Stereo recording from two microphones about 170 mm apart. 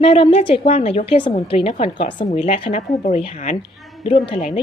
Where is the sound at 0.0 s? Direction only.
35° left (ahead or behind).